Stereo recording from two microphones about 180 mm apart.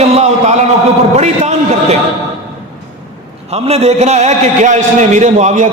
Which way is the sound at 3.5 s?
35° right (ahead or behind).